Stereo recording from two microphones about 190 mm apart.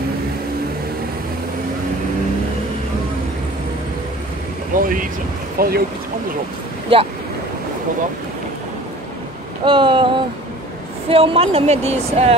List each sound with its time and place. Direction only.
4.7 s vehicle: 45° right (ahead or behind)
5.6 s speech: 50° right (ahead or behind)
6.9 s speech: 30° right (ahead or behind)
9.7 s speech: 25° right (ahead or behind)